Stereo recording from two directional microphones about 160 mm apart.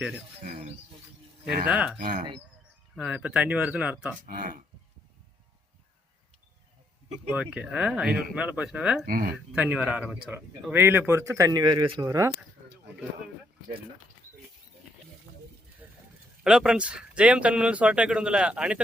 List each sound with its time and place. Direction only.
0.4 s speech: 50° right (ahead or behind)
1.6 s speech: 10° right (ahead or behind)
4.3 s speech: 60° right (ahead or behind)
7.3 s speech: 10° right (ahead or behind)
9.0 s speech: 65° right (ahead or behind)
9.3 s speech: 5° right (ahead or behind)
16.4 s speech: 5° right (ahead or behind)